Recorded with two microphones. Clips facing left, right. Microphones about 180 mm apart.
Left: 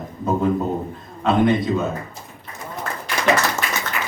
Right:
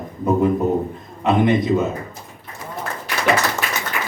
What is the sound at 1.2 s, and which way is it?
Speech, 20° right (ahead or behind).